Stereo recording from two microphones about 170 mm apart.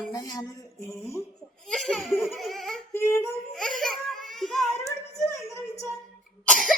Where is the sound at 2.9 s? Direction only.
15° left (ahead or behind).